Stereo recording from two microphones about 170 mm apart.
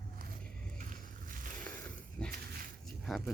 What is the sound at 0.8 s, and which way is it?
Boat, 50° right (ahead or behind).